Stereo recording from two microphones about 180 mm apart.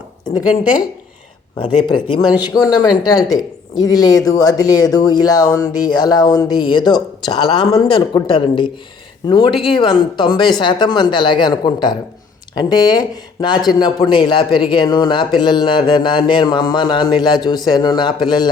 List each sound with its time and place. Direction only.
0.3 s speech: 20° left (ahead or behind)
3.2 s a woman's voice: centre (ahead or behind)
3.8 s speech: 20° left (ahead or behind)